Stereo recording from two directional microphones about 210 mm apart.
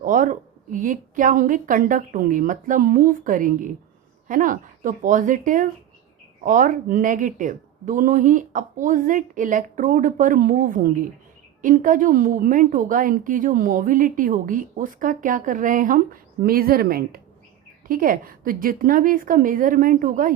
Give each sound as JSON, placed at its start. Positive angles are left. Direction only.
{"t": 0.0, "sound": "a woman's voice", "side_deg": -40}